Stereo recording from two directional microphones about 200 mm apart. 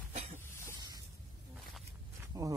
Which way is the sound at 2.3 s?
15° right (ahead or behind).